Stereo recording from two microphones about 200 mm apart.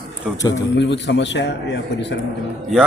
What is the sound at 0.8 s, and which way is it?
A man's voice, 60° left (ahead or behind).